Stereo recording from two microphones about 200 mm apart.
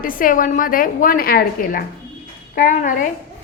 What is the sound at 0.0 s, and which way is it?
A woman's voice, 45° left (ahead or behind).